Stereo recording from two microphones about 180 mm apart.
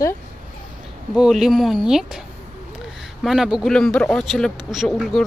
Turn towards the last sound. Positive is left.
turn(degrees=0)  # may be behind; listen again after turning